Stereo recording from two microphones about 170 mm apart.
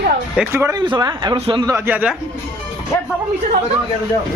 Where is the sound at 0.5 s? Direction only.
15° right (ahead or behind).